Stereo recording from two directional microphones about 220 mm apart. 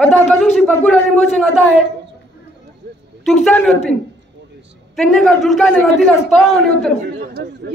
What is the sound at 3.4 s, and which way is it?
Speech, 5° left (ahead or behind).